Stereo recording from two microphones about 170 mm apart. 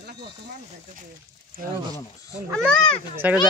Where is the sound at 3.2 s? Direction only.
10° right (ahead or behind).